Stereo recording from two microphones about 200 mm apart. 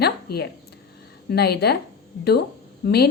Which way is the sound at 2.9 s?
55° left (ahead or behind).